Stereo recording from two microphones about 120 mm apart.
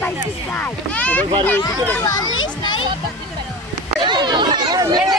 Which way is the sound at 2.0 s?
35° left (ahead or behind).